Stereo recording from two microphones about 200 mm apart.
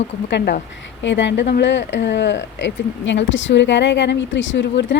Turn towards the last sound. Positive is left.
turn(degrees=65)  # may be behind; listen again after turning